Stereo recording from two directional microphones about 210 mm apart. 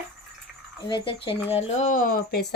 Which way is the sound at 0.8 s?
20° left (ahead or behind).